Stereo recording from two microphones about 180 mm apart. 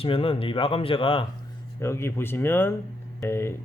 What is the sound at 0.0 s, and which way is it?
Speech, 30° left (ahead or behind).